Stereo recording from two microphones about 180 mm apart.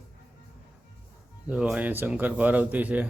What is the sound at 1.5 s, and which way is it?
A man's voice, 5° right (ahead or behind).